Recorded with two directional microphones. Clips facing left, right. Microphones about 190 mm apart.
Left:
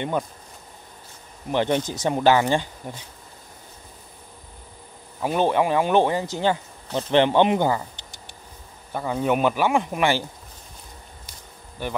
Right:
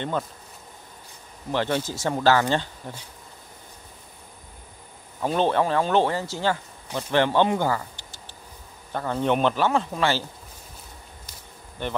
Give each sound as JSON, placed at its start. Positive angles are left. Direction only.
{"t": 1.5, "sound": "speech", "side_deg": 20}
{"t": 5.2, "sound": "speech", "side_deg": 10}
{"t": 8.9, "sound": "speech", "side_deg": 10}